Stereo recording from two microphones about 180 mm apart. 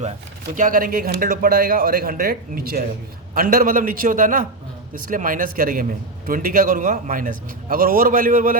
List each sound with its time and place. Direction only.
0.5 s a man's voice: 50° right (ahead or behind)